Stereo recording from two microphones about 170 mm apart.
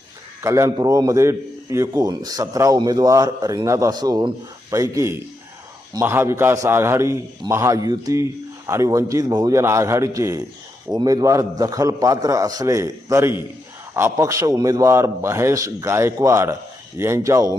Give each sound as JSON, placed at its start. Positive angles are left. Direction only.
{"t": 0.4, "sound": "a man's voice", "side_deg": -20}